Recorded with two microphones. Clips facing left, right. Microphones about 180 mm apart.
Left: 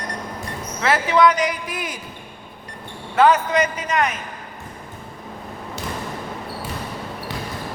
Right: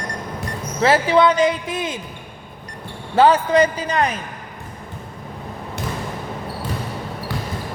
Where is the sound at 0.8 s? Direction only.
30° right (ahead or behind).